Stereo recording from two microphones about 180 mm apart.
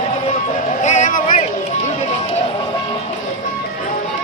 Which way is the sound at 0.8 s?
40° left (ahead or behind).